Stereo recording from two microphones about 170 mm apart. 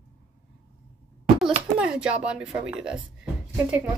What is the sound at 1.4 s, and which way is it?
Speech, 5° right (ahead or behind).